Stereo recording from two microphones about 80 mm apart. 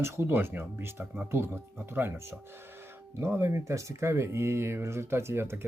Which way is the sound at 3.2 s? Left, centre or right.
Right.